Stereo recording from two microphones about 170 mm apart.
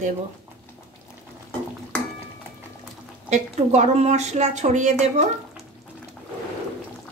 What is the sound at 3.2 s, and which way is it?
A woman's voice, 40° right (ahead or behind).